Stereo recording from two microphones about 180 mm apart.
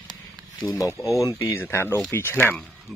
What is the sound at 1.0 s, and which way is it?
Speech, 15° left (ahead or behind).